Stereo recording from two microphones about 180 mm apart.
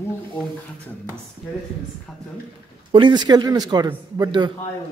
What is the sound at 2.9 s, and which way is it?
Speech, 25° right (ahead or behind).